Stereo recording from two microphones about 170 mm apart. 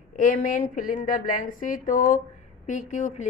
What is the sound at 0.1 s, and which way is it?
A woman's voice, 50° left (ahead or behind).